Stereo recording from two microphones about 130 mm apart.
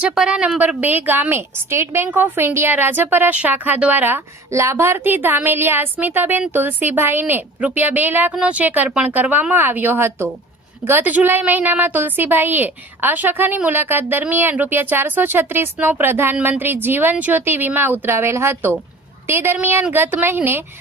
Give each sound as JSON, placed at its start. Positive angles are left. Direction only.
{"t": 0.0, "sound": "a woman's voice", "side_deg": -5}